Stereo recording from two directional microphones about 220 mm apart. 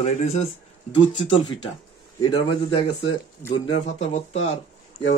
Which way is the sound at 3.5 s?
55° left (ahead or behind).